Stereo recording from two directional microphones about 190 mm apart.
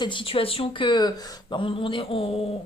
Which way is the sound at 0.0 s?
25° left (ahead or behind).